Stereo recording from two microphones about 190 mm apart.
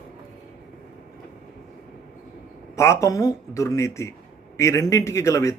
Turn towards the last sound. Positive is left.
turn(degrees=15)  # may be behind; listen again after turning